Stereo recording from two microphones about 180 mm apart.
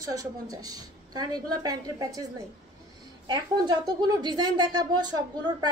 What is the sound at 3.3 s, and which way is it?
A woman's voice, 25° right (ahead or behind).